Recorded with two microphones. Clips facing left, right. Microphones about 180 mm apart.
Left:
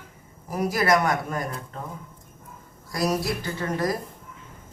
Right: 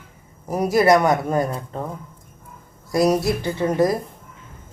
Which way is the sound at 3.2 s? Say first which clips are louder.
Right 7 dB; 25° right (ahead or behind).